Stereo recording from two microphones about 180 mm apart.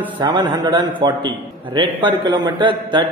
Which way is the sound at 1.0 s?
25° right (ahead or behind).